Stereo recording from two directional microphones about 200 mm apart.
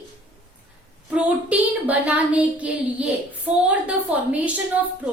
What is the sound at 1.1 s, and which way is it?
A woman's voice, 5° right (ahead or behind).